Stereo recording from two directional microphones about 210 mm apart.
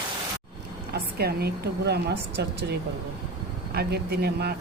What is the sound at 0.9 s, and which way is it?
A woman's voice, 50° right (ahead or behind).